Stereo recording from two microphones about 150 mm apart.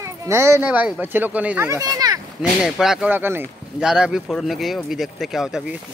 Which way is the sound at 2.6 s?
Centre (ahead or behind).